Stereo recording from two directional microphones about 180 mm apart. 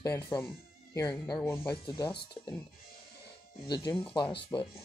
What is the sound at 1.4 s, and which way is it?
Speech, 15° left (ahead or behind).